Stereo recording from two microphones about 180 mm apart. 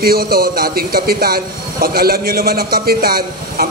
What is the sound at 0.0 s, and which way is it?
A man's voice, 55° right (ahead or behind).